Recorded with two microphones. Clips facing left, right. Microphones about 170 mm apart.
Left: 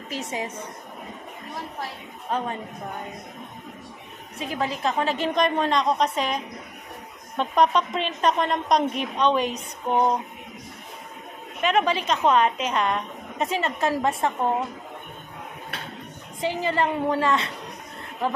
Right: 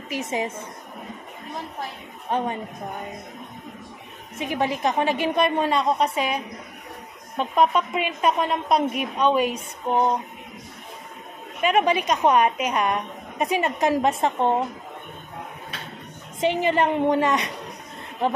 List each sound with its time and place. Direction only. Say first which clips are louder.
0.1 s a woman's voice: right 4 dB; 20° right (ahead or behind)
4.4 s a woman's voice: right 3 dB; 20° right (ahead or behind); by 10.1 s centre (ahead or behind)
11.6 s a woman's voice: right 2 dB; 10° right (ahead or behind)
16.3 s a woman's voice: right 4 dB; 20° right (ahead or behind)